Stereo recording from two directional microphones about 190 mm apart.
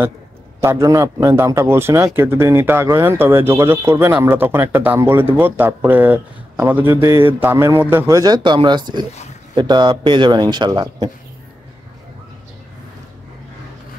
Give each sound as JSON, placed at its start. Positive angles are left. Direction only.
{"t": 0.6, "sound": "a man's voice", "side_deg": -15}